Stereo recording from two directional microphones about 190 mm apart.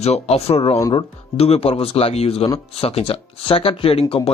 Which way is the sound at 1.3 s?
30° left (ahead or behind).